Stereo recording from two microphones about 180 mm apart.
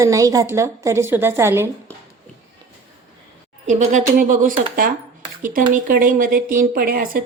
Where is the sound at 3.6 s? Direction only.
40° right (ahead or behind).